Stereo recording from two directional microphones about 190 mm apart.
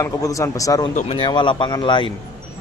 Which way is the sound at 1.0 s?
30° left (ahead or behind).